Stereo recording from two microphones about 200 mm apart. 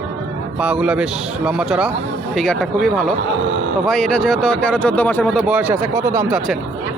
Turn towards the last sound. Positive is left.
turn(degrees=-5)  # may be behind; listen again after turning